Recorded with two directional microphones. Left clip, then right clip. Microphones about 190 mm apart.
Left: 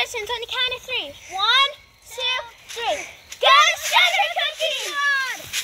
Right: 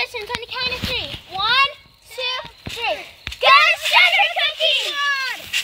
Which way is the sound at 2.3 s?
10° left (ahead or behind).